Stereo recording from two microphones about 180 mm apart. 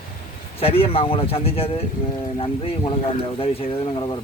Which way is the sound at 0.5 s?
30° left (ahead or behind).